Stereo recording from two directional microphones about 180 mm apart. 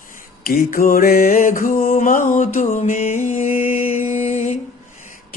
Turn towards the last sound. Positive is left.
turn(degrees=40)  # may be behind; listen again after turning